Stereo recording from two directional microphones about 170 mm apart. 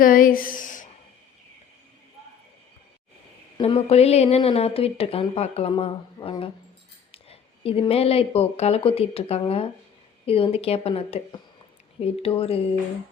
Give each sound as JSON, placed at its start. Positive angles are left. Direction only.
{"t": 0.0, "sound": "speech", "side_deg": 55}
{"t": 3.6, "sound": "a woman's voice", "side_deg": 35}
{"t": 12.2, "sound": "a woman's voice", "side_deg": 35}